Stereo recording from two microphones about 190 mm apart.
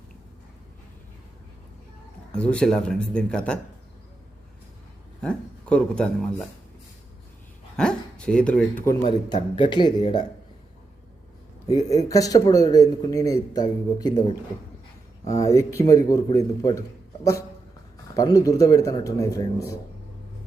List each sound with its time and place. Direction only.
2.4 s speech: 5° left (ahead or behind)
5.2 s speech: 5° left (ahead or behind)
7.8 s speech: 5° left (ahead or behind)
9.0 s speech: 25° left (ahead or behind)
11.7 s speech: 20° left (ahead or behind)
15.3 s speech: 15° left (ahead or behind)
18.2 s speech: 20° left (ahead or behind)